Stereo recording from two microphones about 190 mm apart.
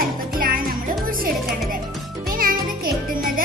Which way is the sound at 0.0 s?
50° right (ahead or behind).